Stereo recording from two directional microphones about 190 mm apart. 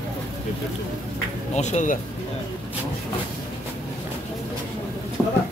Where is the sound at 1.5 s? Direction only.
40° left (ahead or behind).